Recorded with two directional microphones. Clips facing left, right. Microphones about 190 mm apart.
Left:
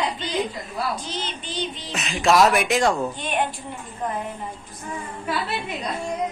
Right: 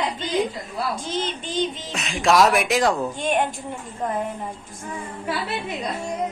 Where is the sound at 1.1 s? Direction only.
50° right (ahead or behind).